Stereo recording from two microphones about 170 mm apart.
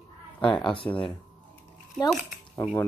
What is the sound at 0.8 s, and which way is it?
Speech, 10° left (ahead or behind).